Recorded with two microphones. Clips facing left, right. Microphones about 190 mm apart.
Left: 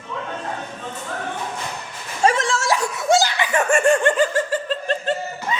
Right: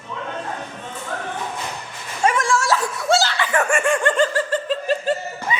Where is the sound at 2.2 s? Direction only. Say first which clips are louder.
Left 1 dB; 30° left (ahead or behind).